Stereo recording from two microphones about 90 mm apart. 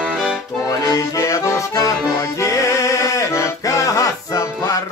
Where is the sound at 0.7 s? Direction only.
40° left (ahead or behind).